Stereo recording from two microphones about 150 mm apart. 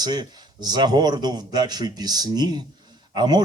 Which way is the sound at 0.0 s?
30° right (ahead or behind).